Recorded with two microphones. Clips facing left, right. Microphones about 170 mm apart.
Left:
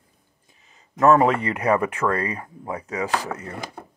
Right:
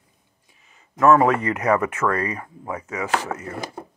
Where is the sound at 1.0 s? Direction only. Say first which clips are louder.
Right 1 dB; 30° left (ahead or behind).